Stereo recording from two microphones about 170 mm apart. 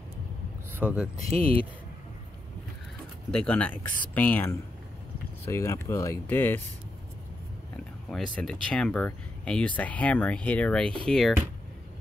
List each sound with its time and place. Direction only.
0.7 s speech: 10° right (ahead or behind)
1.3 s speech: 35° right (ahead or behind)
3.3 s speech: 10° left (ahead or behind)
8.1 s speech: 5° left (ahead or behind)